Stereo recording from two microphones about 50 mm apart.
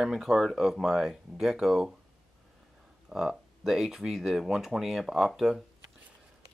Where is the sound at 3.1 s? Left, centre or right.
Centre.